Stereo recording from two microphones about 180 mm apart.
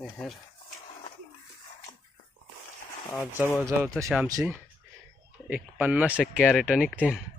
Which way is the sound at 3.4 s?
15° left (ahead or behind).